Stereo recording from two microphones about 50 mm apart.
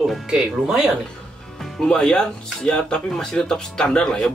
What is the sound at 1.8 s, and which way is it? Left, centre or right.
Speech, centre.